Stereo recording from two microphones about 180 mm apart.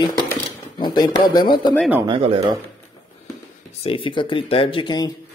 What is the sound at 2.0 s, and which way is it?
Speech, 30° right (ahead or behind).